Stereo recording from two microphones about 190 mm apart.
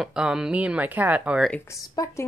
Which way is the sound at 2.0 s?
20° left (ahead or behind).